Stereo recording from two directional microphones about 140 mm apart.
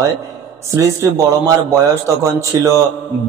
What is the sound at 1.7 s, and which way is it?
Speech, 20° right (ahead or behind).